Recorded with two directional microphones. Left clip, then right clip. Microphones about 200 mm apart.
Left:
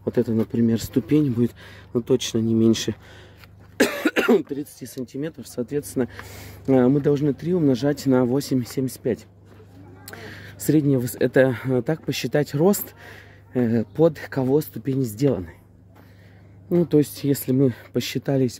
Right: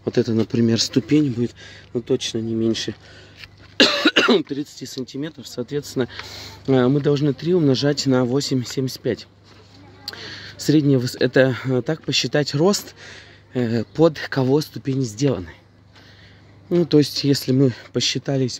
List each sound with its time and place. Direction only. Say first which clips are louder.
0.0 s speech: right 2 dB; 20° right (ahead or behind)
1.0 s speech: right 1 dB; 5° right (ahead or behind); by 3.0 s 15° left (ahead or behind)
3.8 s cough: right 5 dB; 35° right (ahead or behind)
4.7 s speech: right 2 dB; 5° right (ahead or behind)
13.9 s speech: right 3 dB; 20° right (ahead or behind)
14.8 s speech: even; 5° right (ahead or behind)
16.6 s speech: right 2 dB; 25° right (ahead or behind); by 18.6 s 5° right (ahead or behind)